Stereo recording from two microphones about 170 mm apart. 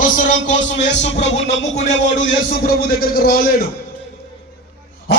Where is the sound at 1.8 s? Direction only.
90° left.